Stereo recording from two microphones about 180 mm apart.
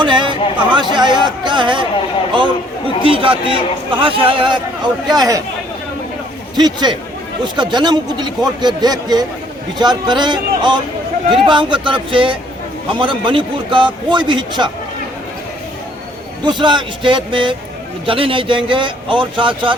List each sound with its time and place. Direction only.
0.0 s a sound: 25° right (ahead or behind)
3.0 s a man's voice: 30° right (ahead or behind)
6.6 s a man's voice: 25° right (ahead or behind)
16.4 s a man's voice: 25° right (ahead or behind)